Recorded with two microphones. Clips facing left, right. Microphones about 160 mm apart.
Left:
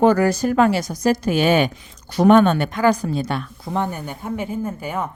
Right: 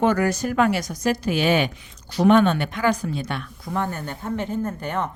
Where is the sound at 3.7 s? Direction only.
15° left (ahead or behind).